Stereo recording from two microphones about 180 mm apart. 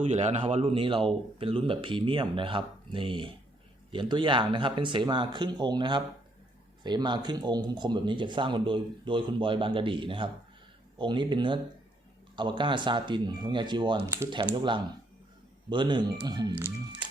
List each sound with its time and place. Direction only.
0.1 s speech: 40° right (ahead or behind); by 16.6 s 20° right (ahead or behind)